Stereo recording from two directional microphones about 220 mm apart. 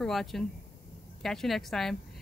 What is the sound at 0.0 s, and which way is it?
Speech, centre (ahead or behind).